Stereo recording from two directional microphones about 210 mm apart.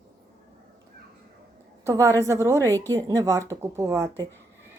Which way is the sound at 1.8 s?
15° right (ahead or behind).